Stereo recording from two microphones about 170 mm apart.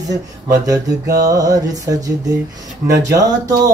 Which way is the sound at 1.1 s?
20° right (ahead or behind).